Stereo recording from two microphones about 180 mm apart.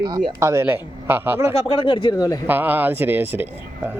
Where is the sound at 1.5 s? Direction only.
35° left (ahead or behind).